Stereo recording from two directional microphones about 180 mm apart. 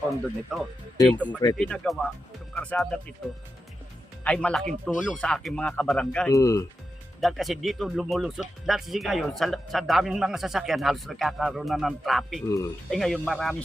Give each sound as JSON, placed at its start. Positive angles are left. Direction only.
{"t": 0.5, "sound": "speech", "side_deg": 0}
{"t": 0.9, "sound": "speech", "side_deg": 20}
{"t": 1.5, "sound": "speech", "side_deg": 5}
{"t": 4.2, "sound": "speech", "side_deg": 5}
{"t": 6.3, "sound": "speech", "side_deg": 15}
{"t": 7.2, "sound": "speech", "side_deg": 0}
{"t": 12.5, "sound": "speech", "side_deg": 15}
{"t": 12.9, "sound": "speech", "side_deg": 0}